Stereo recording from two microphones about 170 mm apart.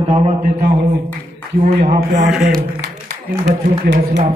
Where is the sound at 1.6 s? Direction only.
45° right (ahead or behind).